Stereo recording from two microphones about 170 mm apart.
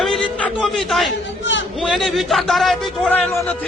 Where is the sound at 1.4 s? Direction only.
90° left.